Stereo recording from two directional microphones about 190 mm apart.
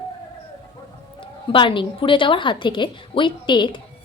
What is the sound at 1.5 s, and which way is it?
A child's voice, 25° left (ahead or behind).